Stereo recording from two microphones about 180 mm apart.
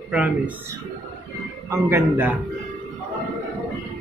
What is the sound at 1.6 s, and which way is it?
Speech, 15° right (ahead or behind).